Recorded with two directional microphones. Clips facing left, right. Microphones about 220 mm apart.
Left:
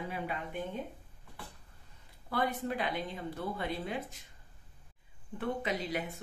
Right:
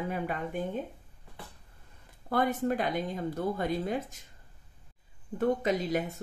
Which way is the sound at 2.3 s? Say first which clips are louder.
Right 5 dB; 45° right (ahead or behind).